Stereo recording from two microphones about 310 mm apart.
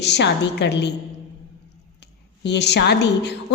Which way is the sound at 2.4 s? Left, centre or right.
Left.